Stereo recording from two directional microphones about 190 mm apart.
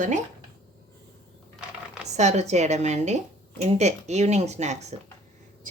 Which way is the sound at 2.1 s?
35° right (ahead or behind).